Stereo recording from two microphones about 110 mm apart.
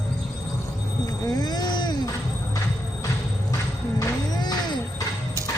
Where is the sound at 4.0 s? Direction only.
35° left (ahead or behind).